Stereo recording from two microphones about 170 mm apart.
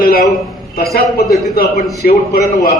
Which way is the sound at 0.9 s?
65° left (ahead or behind).